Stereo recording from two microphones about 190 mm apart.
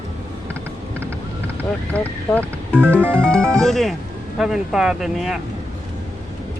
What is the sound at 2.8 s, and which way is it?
Music, 10° right (ahead or behind).